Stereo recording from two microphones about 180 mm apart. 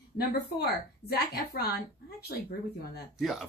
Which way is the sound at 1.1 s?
60° left (ahead or behind).